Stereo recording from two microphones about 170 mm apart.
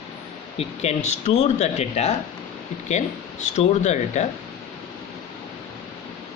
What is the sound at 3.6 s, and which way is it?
Speech, 40° left (ahead or behind).